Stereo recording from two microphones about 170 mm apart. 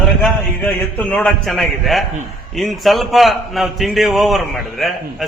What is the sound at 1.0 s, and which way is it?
A man's voice, 10° left (ahead or behind).